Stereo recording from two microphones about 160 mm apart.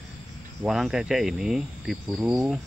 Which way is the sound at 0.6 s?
5° right (ahead or behind).